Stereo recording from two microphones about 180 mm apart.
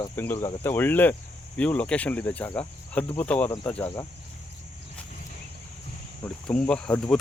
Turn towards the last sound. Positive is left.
turn(degrees=5)  # may be behind; listen again after turning